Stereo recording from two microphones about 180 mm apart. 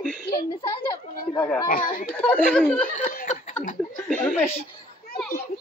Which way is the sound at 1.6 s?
50° left (ahead or behind).